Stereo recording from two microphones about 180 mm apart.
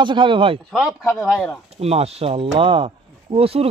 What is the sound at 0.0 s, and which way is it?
Speech, 25° right (ahead or behind).